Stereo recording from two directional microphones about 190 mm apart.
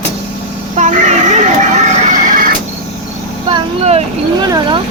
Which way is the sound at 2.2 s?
45° right (ahead or behind).